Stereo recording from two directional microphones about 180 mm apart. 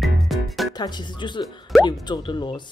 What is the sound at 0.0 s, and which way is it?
Music, centre (ahead or behind).